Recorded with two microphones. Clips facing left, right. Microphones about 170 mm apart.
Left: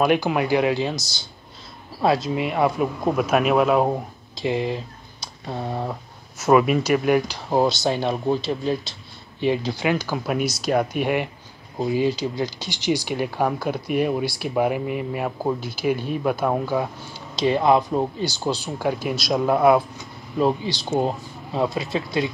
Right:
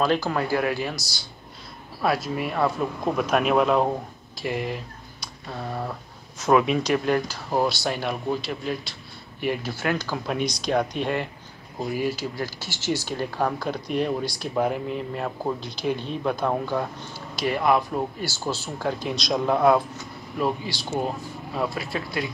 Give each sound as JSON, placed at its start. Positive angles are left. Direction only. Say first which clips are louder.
{"t": 0.0, "sound": "speech", "louder": "left 3 dB", "side_deg": 15}
{"t": 3.0, "sound": "speech", "louder": "left 2 dB", "side_deg": 5}
{"t": 4.4, "sound": "speech", "louder": "left 5 dB", "side_deg": 25}
{"t": 6.4, "sound": "speech", "louder": "left 3 dB", "side_deg": 5}
{"t": 7.2, "sound": "speech", "louder": "left 4 dB", "side_deg": 20}
{"t": 9.4, "sound": "speech", "louder": "left 5 dB", "side_deg": 25}
{"t": 9.8, "sound": "speech", "louder": "left 3 dB", "side_deg": 15}
{"t": 11.8, "sound": "speech", "louder": "left 5 dB", "side_deg": 25}
{"t": 17.4, "sound": "speech", "louder": "left 4 dB", "side_deg": 25}
{"t": 20.3, "sound": "speech", "louder": "left 5 dB", "side_deg": 25}